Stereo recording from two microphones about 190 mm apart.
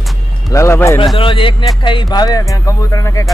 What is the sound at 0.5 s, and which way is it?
Music, 15° left (ahead or behind).